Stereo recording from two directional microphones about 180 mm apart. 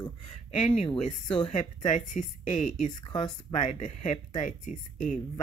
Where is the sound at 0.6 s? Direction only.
40° left (ahead or behind).